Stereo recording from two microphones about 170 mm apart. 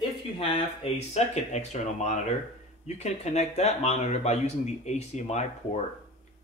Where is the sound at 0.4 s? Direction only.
40° left (ahead or behind).